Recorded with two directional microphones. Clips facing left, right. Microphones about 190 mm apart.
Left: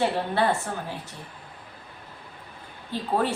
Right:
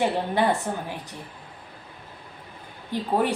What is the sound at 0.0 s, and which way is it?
Speech, 15° right (ahead or behind).